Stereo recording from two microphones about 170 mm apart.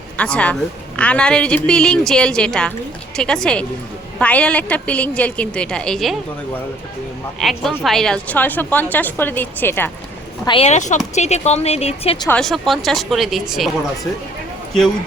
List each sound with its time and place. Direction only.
0.2 s a woman's voice: 5° left (ahead or behind)
7.3 s a woman's voice: centre (ahead or behind)
10.4 s speech: 35° left (ahead or behind)
12.3 s a woman's voice: centre (ahead or behind)